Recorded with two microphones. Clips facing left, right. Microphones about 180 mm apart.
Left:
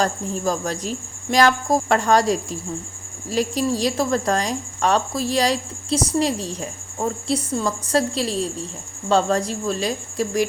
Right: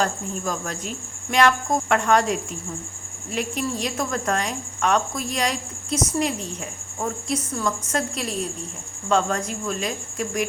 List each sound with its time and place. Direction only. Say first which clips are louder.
0.0 s speech: left 3 dB; 35° left (ahead or behind)